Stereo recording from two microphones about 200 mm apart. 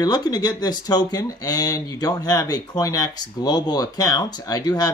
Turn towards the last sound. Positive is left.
turn(degrees=20)  # may be behind; listen again after turning